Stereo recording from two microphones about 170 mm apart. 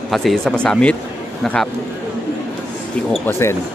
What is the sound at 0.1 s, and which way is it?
Speech, centre (ahead or behind).